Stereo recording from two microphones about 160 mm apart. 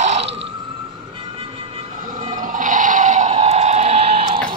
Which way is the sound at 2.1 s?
55° right (ahead or behind).